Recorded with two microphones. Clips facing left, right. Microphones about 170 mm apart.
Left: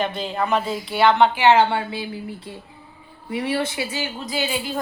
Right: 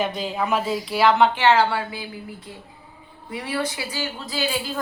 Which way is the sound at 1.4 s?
20° left (ahead or behind).